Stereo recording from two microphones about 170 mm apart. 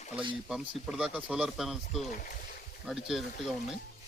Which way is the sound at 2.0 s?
50° left (ahead or behind).